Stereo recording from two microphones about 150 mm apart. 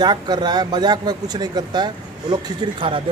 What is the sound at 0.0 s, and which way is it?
A man's voice, 30° right (ahead or behind).